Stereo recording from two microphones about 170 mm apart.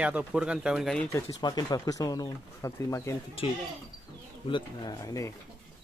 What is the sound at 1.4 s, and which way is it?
Speech, 25° left (ahead or behind).